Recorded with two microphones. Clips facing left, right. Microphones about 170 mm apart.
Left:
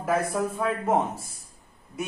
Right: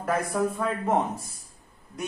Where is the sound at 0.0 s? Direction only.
5° left (ahead or behind).